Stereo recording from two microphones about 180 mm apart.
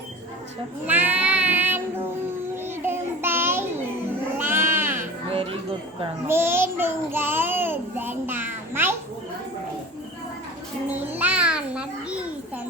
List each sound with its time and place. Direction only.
0.9 s child singing: 10° right (ahead or behind)
2.8 s child singing: 10° right (ahead or behind)
4.4 s sheep: 10° right (ahead or behind)
5.3 s music: 30° right (ahead or behind)
6.2 s child singing: 15° right (ahead or behind)
10.8 s child singing: 40° right (ahead or behind)
11.1 s babbling: 10° right (ahead or behind)